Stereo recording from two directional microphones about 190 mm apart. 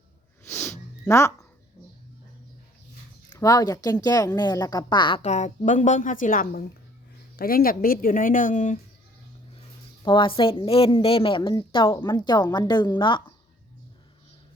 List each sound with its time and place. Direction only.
0.4 s a sound: 10° left (ahead or behind)
3.2 s a woman's voice: 20° left (ahead or behind)
5.2 s a woman's voice: 40° left (ahead or behind)
10.0 s a woman's voice: 25° left (ahead or behind)